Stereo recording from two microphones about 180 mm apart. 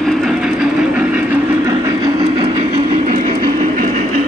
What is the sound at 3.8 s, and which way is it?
Train, 45° right (ahead or behind).